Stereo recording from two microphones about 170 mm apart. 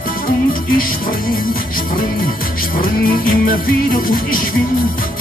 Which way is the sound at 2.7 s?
55° left (ahead or behind).